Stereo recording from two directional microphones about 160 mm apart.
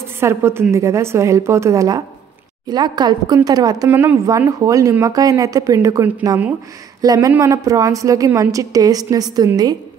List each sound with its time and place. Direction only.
0.2 s a woman's voice: 15° right (ahead or behind)